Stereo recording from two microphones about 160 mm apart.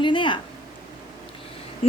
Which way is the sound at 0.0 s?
30° left (ahead or behind).